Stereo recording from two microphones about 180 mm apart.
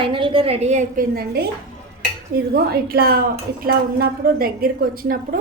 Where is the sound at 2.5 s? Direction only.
60° right (ahead or behind).